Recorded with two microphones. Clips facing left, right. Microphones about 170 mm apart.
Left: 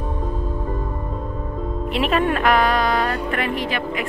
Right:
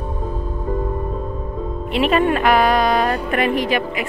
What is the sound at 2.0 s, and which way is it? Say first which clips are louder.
Speech: right 3 dB; centre (ahead or behind).